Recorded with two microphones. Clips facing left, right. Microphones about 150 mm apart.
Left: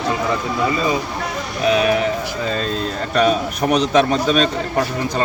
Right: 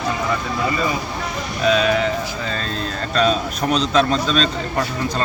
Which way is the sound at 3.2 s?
15° left (ahead or behind).